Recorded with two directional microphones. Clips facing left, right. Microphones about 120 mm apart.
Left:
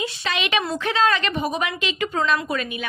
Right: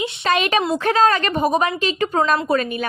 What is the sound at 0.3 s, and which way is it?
A woman's voice, 45° right (ahead or behind).